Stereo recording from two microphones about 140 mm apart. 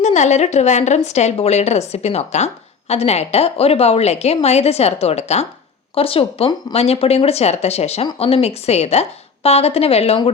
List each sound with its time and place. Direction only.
0.0 s a woman's voice: 55° left (ahead or behind)